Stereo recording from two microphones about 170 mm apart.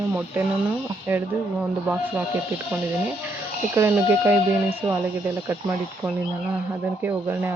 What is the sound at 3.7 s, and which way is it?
Speech, 15° right (ahead or behind).